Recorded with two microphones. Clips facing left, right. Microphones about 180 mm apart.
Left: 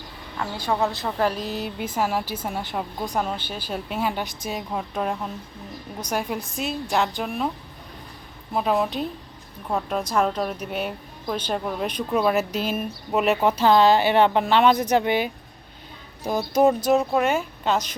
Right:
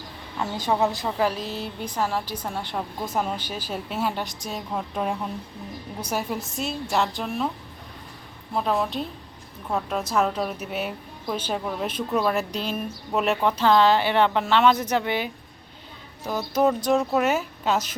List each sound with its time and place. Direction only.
0.5 s speech: 20° right (ahead or behind)
1.0 s a woman's voice: centre (ahead or behind)
8.5 s a woman's voice: 5° left (ahead or behind)
17.2 s a woman's voice: 5° right (ahead or behind)